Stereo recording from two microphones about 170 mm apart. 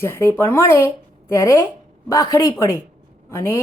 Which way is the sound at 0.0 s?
15° left (ahead or behind).